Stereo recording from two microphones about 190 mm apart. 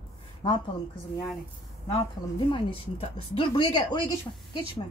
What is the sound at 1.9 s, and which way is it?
Speech, 25° left (ahead or behind).